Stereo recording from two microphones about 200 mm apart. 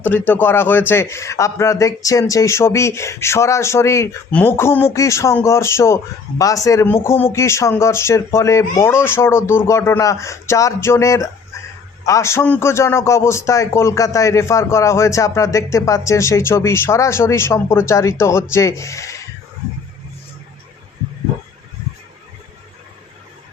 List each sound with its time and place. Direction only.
0.0 s a man's voice: 10° left (ahead or behind)